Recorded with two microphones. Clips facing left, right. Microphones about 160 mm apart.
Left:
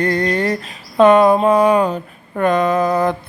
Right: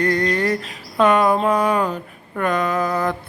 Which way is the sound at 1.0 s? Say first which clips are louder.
Left 6 dB; 25° left (ahead or behind).